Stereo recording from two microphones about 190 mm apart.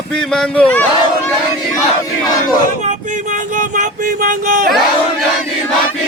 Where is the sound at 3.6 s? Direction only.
45° right (ahead or behind).